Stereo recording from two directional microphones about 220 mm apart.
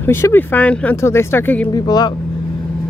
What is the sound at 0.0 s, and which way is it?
Speech, 10° left (ahead or behind).